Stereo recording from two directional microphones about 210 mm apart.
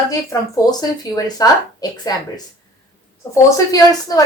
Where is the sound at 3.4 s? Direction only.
15° left (ahead or behind).